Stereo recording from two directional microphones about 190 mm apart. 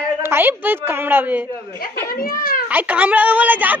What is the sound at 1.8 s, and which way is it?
Speech, 50° left (ahead or behind).